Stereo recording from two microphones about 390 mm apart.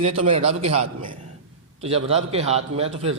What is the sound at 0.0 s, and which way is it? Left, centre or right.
A man's voice, centre.